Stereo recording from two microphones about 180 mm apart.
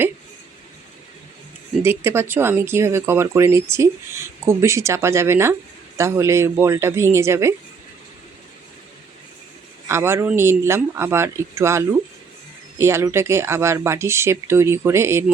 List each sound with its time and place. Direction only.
1.8 s speech: 15° right (ahead or behind)
9.9 s speech: 15° right (ahead or behind)